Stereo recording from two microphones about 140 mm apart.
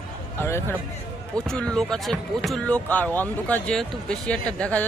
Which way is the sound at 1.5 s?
5° left (ahead or behind).